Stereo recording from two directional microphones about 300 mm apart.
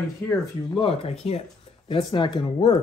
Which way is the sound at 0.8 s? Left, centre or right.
Centre.